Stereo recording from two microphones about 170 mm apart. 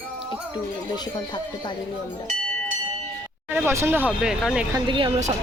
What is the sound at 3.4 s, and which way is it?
Speech, 10° right (ahead or behind).